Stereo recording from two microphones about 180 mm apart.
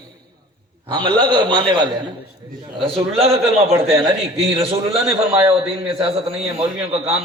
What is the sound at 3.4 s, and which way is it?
A man's voice, centre (ahead or behind).